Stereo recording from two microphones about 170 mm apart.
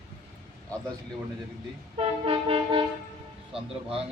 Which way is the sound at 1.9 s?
35° right (ahead or behind).